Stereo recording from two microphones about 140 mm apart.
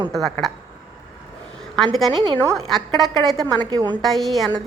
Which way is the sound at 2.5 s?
Centre (ahead or behind).